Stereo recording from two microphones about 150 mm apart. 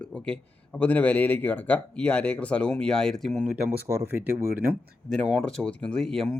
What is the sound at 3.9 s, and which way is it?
Speech, 20° right (ahead or behind).